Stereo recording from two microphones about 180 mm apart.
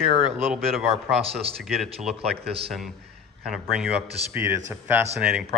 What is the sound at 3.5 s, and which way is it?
Speech, 5° right (ahead or behind).